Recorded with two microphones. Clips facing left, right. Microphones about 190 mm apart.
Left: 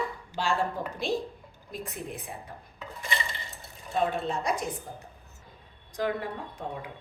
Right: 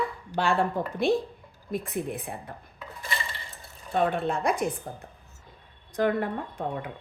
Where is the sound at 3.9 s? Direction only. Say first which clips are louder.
Right 3 dB; 55° right (ahead or behind).